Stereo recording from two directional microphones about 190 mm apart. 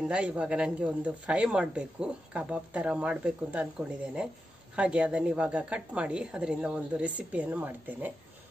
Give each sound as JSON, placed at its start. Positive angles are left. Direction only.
{"t": 0.1, "sound": "a woman's voice", "side_deg": -5}